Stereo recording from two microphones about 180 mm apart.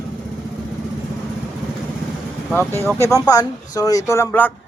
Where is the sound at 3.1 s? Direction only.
20° left (ahead or behind).